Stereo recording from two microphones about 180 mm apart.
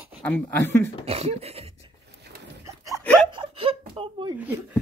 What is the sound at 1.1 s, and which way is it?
Beatboxing, 35° right (ahead or behind).